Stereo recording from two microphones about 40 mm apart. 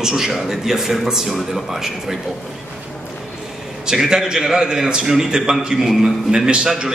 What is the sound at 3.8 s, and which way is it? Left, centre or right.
A man's voice, centre.